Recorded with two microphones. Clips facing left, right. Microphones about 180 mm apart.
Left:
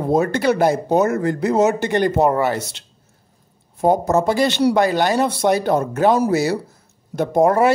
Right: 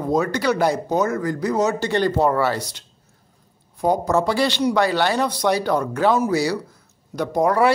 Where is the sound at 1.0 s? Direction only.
25° left (ahead or behind).